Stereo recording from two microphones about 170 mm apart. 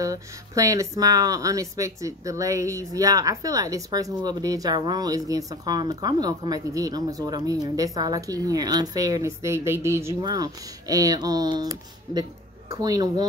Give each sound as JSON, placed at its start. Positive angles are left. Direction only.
{"t": 0.0, "sound": "speech", "side_deg": -20}